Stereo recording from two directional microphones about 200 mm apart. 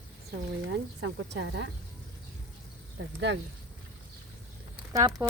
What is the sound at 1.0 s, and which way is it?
Speech, 65° right (ahead or behind).